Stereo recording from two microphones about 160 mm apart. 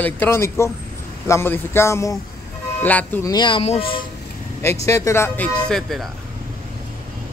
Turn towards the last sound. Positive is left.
turn(degrees=0)  # may be behind; listen again after turning